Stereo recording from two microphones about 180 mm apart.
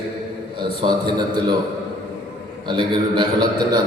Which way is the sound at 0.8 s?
25° right (ahead or behind).